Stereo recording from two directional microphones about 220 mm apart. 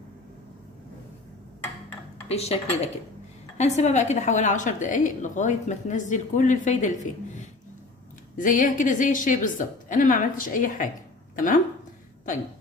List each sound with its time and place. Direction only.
2.3 s a woman's voice: 30° left (ahead or behind)
8.4 s a woman's voice: 35° left (ahead or behind)